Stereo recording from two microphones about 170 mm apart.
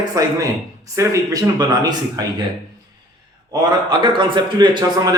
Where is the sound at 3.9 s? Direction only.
25° right (ahead or behind).